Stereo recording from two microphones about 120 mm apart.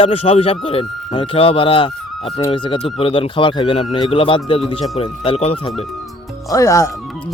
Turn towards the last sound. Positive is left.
turn(degrees=25)  # may be behind; listen again after turning